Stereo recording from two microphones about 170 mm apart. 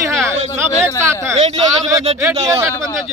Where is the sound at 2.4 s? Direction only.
15° right (ahead or behind).